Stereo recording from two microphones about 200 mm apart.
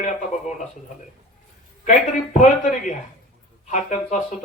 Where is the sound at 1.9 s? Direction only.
40° left (ahead or behind).